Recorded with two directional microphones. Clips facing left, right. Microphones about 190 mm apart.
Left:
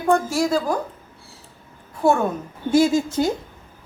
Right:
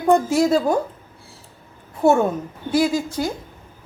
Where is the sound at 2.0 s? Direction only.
20° right (ahead or behind).